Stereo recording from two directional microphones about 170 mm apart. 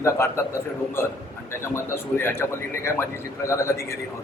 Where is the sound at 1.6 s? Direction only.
15° left (ahead or behind).